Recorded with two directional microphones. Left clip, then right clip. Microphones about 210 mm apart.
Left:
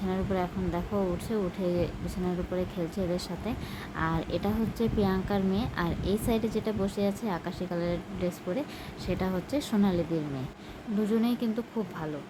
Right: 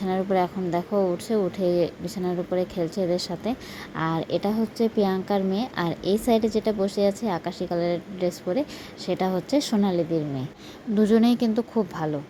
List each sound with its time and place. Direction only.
0.1 s a woman's voice: 25° right (ahead or behind)
11.0 s a woman's voice: 35° right (ahead or behind)